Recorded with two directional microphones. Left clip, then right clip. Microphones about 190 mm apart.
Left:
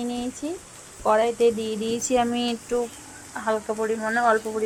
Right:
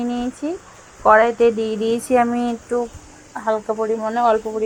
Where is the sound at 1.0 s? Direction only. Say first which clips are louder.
Right 7 dB; 15° right (ahead or behind).